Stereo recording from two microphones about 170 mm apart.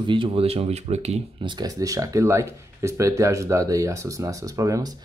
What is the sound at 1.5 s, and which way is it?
Speech, 25° right (ahead or behind).